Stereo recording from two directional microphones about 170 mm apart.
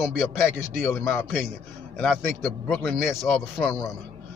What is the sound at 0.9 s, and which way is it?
A man's voice, 15° left (ahead or behind).